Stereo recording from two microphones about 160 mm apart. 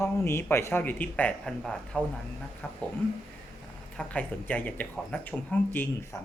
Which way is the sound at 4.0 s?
10° left (ahead or behind).